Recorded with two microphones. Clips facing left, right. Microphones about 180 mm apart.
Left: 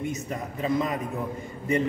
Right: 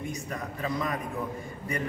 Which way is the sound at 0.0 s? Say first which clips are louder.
Left 4 dB; 20° left (ahead or behind).